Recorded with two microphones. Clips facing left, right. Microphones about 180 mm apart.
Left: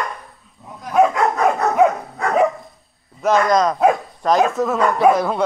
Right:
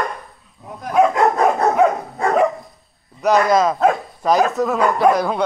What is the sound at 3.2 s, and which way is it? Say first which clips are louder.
Speech: right 1 dB; 5° right (ahead or behind).